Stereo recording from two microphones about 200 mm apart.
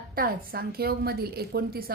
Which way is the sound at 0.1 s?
45° right (ahead or behind).